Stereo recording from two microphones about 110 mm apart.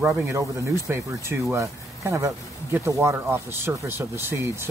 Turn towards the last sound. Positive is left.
turn(degrees=-20)  # may be behind; listen again after turning